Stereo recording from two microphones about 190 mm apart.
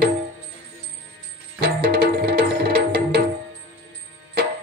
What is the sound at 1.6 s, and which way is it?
Music, 60° right (ahead or behind).